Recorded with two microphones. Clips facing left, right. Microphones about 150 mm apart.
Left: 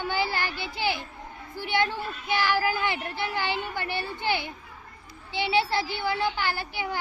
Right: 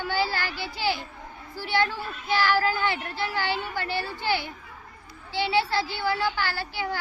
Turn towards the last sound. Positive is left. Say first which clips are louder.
# even
turn(degrees=20)  # may be behind; listen again after turning